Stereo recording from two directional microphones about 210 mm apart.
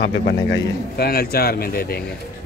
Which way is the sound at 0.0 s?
50° left (ahead or behind).